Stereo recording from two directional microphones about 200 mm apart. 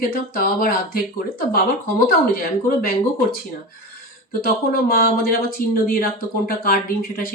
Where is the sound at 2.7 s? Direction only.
50° left (ahead or behind).